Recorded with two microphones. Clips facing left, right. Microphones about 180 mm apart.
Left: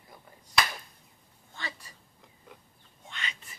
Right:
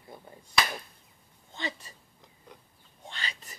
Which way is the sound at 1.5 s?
20° right (ahead or behind).